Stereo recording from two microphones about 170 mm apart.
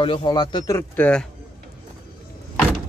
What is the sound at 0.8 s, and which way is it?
Speech, 10° left (ahead or behind).